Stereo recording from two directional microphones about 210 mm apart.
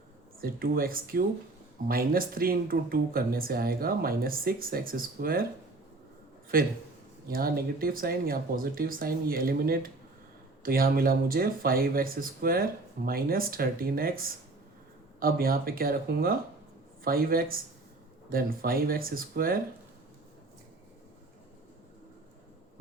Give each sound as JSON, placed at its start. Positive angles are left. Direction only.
{"t": 0.4, "sound": "speech", "side_deg": -45}
{"t": 6.5, "sound": "speech", "side_deg": -45}